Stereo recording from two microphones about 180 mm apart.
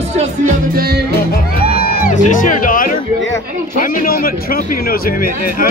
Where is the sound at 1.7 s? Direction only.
50° left (ahead or behind).